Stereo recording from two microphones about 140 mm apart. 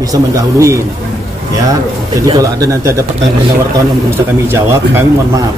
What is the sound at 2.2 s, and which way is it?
Speech, 25° right (ahead or behind).